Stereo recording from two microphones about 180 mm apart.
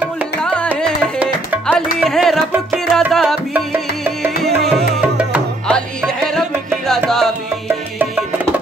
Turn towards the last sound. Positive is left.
turn(degrees=0)  # may be behind; listen again after turning